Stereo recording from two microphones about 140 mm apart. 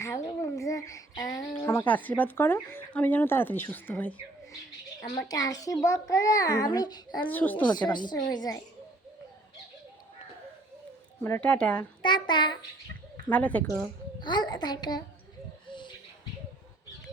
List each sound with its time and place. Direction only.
0.0 s a sound: 20° left (ahead or behind)
1.6 s a child's voice: 15° left (ahead or behind)
7.3 s speech: 10° left (ahead or behind)
7.8 s a woman's voice: 30° left (ahead or behind)
11.2 s speech: 10° left (ahead or behind)
12.0 s a woman's voice: 35° left (ahead or behind)
13.2 s speech: 10° left (ahead or behind)
13.7 s a woman's voice: 20° left (ahead or behind)